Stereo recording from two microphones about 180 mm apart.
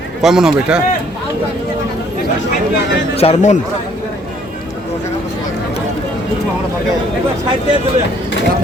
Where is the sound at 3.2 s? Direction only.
40° left (ahead or behind).